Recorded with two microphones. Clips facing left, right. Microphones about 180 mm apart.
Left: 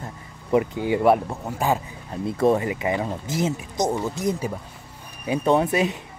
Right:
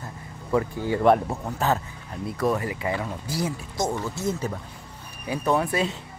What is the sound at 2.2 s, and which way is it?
Speech, 25° left (ahead or behind).